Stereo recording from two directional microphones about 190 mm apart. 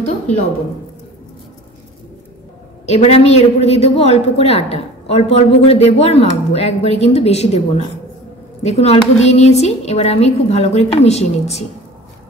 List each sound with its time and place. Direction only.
2.9 s a woman's voice: 35° left (ahead or behind)